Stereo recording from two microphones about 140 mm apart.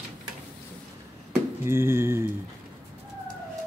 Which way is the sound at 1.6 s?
15° right (ahead or behind).